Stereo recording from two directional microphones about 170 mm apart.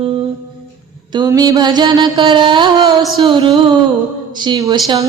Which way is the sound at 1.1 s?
25° right (ahead or behind).